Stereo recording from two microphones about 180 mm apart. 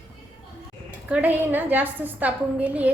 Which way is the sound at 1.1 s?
10° right (ahead or behind).